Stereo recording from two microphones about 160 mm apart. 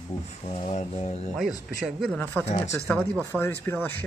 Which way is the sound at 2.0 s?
Centre (ahead or behind).